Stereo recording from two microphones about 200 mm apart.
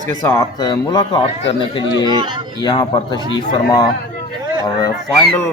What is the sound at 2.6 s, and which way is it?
A man's voice, 20° left (ahead or behind).